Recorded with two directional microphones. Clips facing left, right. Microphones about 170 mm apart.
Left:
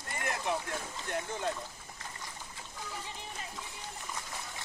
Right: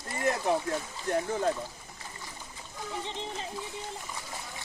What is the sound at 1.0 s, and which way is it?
Speech, 40° right (ahead or behind).